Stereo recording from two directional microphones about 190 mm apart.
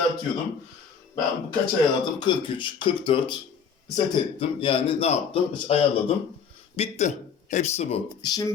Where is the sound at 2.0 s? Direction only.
25° left (ahead or behind).